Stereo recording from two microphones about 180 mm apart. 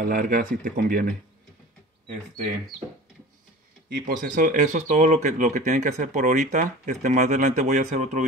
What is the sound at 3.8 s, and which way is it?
Speech, 50° right (ahead or behind).